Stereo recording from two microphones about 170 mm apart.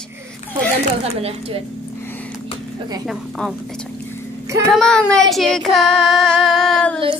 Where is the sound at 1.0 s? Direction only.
35° right (ahead or behind).